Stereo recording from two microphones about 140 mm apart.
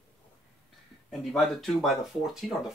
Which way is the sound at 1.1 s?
Centre (ahead or behind).